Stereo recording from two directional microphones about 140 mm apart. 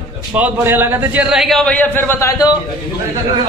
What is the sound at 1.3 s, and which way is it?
A man's voice, centre (ahead or behind).